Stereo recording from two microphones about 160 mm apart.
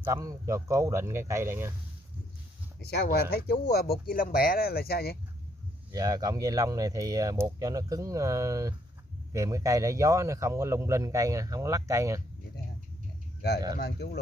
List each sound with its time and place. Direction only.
0.0 s speech: 20° right (ahead or behind)
2.8 s speech: 80° left
5.9 s speech: 25° right (ahead or behind)
13.7 s a man's voice: 90° left